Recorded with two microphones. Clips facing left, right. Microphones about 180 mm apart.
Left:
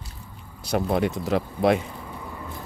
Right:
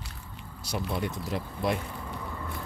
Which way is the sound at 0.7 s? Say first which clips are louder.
Left 9 dB; 60° left (ahead or behind).